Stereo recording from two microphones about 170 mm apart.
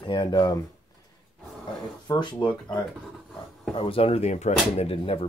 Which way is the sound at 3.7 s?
35° left (ahead or behind).